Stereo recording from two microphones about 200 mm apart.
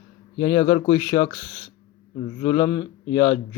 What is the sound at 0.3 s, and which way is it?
A man's voice, 25° left (ahead or behind).